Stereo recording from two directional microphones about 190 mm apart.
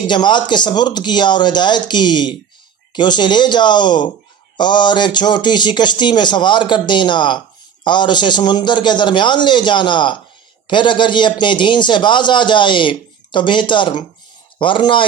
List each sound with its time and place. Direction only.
0.1 s a man's voice: 25° left (ahead or behind)